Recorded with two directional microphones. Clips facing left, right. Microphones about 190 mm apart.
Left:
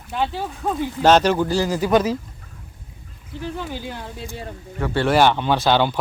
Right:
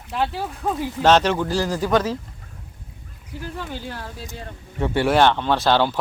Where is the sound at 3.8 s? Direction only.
15° left (ahead or behind).